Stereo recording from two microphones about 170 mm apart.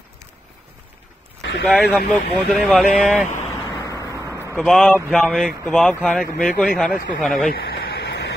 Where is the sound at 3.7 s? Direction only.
20° left (ahead or behind).